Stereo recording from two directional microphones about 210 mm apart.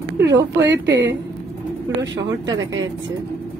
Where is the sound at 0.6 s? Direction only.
55° right (ahead or behind).